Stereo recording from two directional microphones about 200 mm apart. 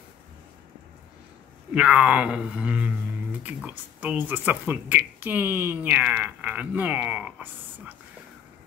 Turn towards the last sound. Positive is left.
turn(degrees=-10)  # may be behind; listen again after turning